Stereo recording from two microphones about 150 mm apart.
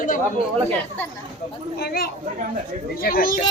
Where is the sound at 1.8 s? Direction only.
90° left.